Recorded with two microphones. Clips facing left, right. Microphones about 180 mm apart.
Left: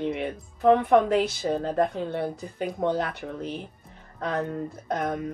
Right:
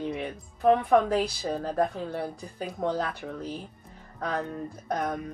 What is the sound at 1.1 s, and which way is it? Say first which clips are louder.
Speech: left 3 dB; 20° left (ahead or behind).